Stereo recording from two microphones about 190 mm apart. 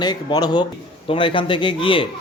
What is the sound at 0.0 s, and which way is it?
A man's voice, 20° left (ahead or behind).